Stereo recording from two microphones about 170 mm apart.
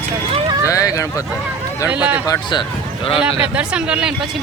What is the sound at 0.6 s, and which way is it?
Speech, 20° left (ahead or behind).